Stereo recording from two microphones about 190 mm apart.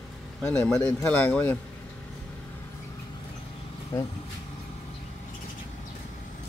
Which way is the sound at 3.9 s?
20° left (ahead or behind).